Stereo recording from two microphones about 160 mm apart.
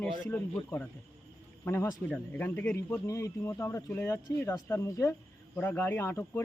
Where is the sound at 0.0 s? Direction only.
15° left (ahead or behind).